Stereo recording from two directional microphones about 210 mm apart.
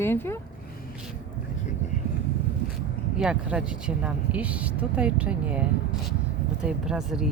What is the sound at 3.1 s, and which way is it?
Speech, 5° right (ahead or behind).